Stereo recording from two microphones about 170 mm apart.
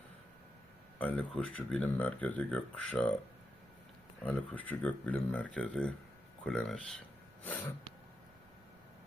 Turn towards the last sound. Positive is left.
turn(degrees=10)  # may be behind; listen again after turning